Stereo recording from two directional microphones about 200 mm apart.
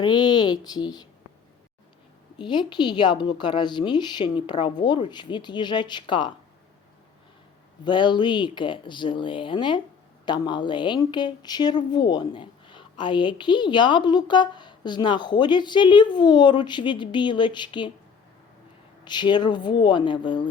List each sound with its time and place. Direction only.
0.0 s speech: 20° left (ahead or behind)
2.4 s speech: 25° left (ahead or behind)
7.9 s speech: 20° left (ahead or behind)
19.0 s speech: 20° left (ahead or behind)